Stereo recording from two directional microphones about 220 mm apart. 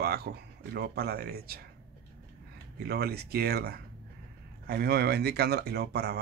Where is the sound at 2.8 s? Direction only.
45° right (ahead or behind).